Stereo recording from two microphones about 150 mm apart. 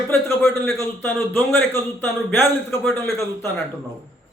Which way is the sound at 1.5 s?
15° left (ahead or behind).